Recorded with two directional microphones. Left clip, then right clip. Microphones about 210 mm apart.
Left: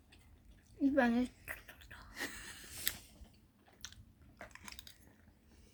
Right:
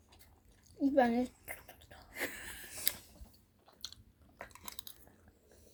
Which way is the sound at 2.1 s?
60° left (ahead or behind).